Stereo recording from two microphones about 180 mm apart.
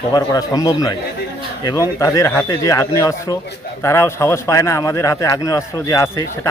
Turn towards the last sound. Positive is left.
turn(degrees=15)  # may be behind; listen again after turning